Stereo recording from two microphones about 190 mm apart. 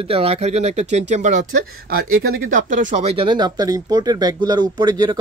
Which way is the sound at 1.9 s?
50° right (ahead or behind).